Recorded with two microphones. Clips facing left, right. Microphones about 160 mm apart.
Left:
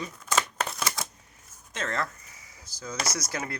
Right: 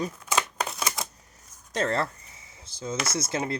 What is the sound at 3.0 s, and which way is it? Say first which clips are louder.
Speech: right 5 dB; 25° right (ahead or behind).